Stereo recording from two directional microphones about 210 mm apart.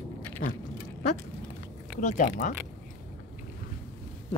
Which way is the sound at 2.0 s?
35° left (ahead or behind).